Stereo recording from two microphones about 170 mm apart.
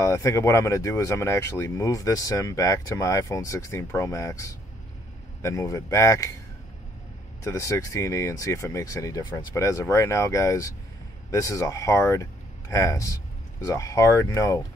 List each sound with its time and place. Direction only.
0.0 s speech: 20° left (ahead or behind)
7.4 s speech: 20° left (ahead or behind)